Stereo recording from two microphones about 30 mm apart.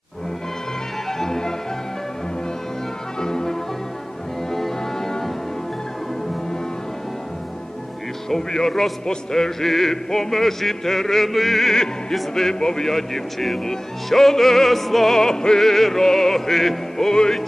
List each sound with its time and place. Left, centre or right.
1.2 s music: centre
3.2 s music: left
4.5 s music: centre
8.3 s speech: centre
12.1 s speech: centre
12.9 s speech: centre
15.1 s speech: centre
15.6 s speech: centre